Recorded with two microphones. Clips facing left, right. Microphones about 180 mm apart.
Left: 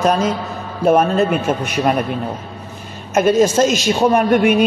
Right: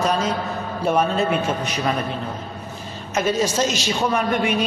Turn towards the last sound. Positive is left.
turn(degrees=55)  # may be behind; listen again after turning